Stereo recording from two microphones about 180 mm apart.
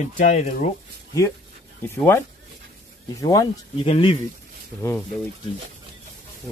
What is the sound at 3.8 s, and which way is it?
Speech, 30° left (ahead or behind).